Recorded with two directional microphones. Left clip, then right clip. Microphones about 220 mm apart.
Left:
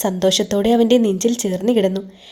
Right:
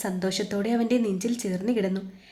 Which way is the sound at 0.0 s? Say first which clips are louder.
Left 12 dB; 35° left (ahead or behind).